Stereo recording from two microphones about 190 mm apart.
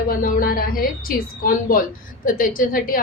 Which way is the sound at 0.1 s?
45° left (ahead or behind).